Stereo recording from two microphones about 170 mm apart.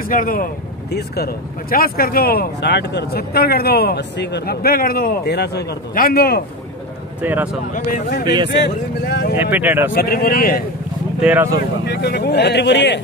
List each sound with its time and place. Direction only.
0.1 s speech: 55° left (ahead or behind)
0.9 s speech: 70° left (ahead or behind)
4.6 s speech: 60° left (ahead or behind)
7.2 s speech: 10° right (ahead or behind)
8.5 s speech: 85° left
9.4 s speech: 10° right (ahead or behind)
9.9 s speech: 65° left (ahead or behind)
11.1 s speech: 5° right (ahead or behind)
11.8 s speech: 75° left (ahead or behind)